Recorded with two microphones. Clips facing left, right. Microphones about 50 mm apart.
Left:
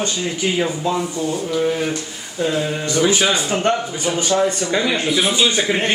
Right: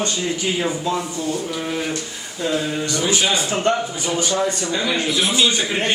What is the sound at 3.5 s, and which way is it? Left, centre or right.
Speech, centre.